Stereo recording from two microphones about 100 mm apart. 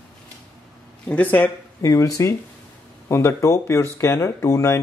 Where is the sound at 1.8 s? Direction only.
35° left (ahead or behind).